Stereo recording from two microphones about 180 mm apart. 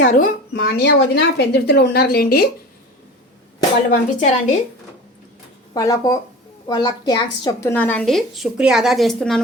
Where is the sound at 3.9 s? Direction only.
45° left (ahead or behind).